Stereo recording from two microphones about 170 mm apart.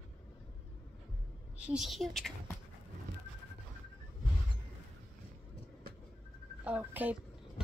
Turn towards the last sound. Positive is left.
turn(degrees=-10)  # may be behind; listen again after turning